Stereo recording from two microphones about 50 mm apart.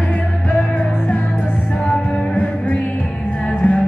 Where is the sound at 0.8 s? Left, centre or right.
Left.